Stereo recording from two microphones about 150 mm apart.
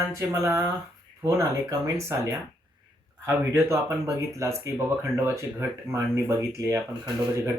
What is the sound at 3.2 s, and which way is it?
Speech, 20° right (ahead or behind).